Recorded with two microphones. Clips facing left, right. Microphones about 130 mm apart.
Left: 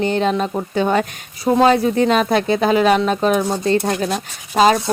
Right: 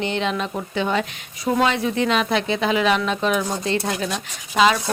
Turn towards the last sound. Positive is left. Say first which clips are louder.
# left 4 dB
turn(degrees=40)  # may be behind; listen again after turning